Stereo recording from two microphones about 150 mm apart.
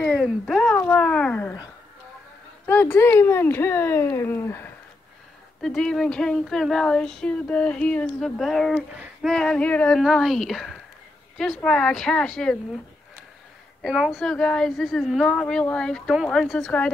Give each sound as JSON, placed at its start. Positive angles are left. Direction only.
{"t": 0.2, "sound": "speech", "side_deg": 5}
{"t": 5.6, "sound": "speech", "side_deg": 5}
{"t": 13.8, "sound": "speech", "side_deg": 0}